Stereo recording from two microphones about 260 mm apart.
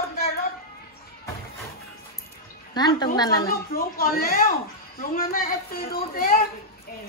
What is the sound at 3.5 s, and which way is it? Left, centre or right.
A woman's voice, left.